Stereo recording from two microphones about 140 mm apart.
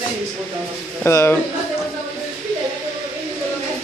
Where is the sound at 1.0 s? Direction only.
20° left (ahead or behind).